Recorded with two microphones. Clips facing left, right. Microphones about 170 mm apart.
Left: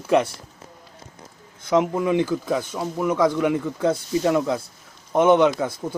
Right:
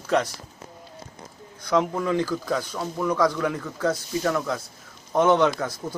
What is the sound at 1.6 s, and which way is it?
Speech, 20° left (ahead or behind).